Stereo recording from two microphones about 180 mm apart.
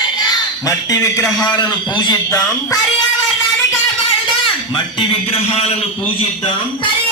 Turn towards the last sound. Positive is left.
turn(degrees=35)  # may be behind; listen again after turning